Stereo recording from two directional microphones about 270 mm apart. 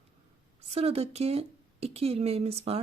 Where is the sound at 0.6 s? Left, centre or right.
Right.